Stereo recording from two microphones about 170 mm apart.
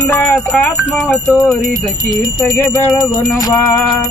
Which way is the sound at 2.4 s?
10° left (ahead or behind).